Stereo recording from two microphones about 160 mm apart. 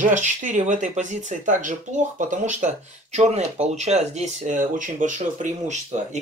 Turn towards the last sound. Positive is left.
turn(degrees=-50)  # may be behind; listen again after turning